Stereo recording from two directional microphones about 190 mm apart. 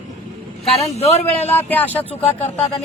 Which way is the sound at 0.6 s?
35° left (ahead or behind).